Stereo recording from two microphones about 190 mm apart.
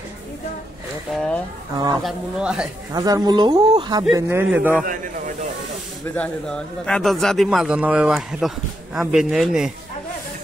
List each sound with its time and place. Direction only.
1.1 s a sound: 5° left (ahead or behind)
2.0 s a man's voice: 5° right (ahead or behind)
2.9 s speech: 20° right (ahead or behind)
4.1 s a man's voice: 10° right (ahead or behind)
4.8 s a sound: 45° right (ahead or behind)
6.1 s a man's voice: 5° left (ahead or behind)